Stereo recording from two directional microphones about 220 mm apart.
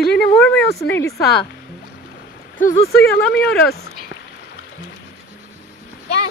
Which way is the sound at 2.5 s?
35° left (ahead or behind).